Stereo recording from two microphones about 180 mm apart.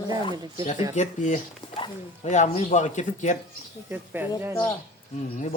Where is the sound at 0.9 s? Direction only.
40° left (ahead or behind).